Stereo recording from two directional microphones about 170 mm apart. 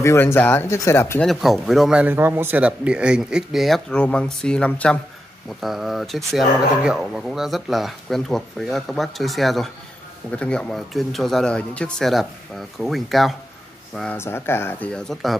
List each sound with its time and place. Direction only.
0.0 s speech: 15° left (ahead or behind)
1.2 s speech: centre (ahead or behind)
14.1 s speech: 15° left (ahead or behind)